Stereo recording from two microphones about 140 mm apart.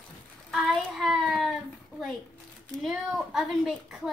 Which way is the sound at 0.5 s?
Centre (ahead or behind).